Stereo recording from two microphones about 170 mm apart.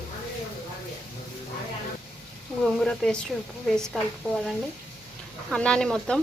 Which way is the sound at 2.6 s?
5° left (ahead or behind).